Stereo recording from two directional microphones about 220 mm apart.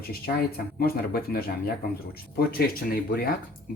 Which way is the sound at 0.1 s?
45° left (ahead or behind).